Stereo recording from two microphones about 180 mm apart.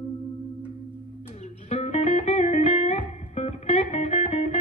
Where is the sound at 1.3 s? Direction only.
35° left (ahead or behind).